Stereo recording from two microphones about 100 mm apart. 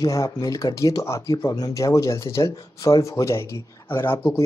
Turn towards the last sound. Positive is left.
turn(degrees=25)  # may be behind; listen again after turning